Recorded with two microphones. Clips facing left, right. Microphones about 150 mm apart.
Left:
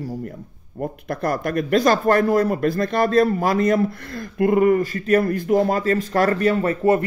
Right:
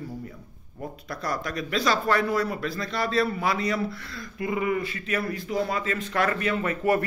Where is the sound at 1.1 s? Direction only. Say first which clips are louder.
Left 8 dB; 50° left (ahead or behind).